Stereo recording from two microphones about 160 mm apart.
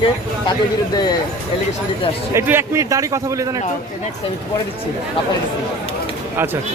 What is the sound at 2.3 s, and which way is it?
A man's voice, 15° right (ahead or behind).